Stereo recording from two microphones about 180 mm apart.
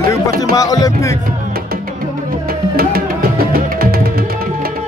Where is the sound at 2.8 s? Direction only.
55° right (ahead or behind).